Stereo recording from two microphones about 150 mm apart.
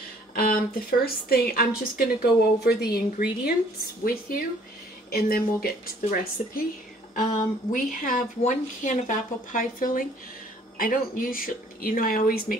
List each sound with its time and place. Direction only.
0.3 s speech: 75° left (ahead or behind)
2.6 s a woman's voice: 90° left
4.0 s speech: 75° left (ahead or behind)
7.2 s a woman's voice: 60° left (ahead or behind); by 12.5 s 80° left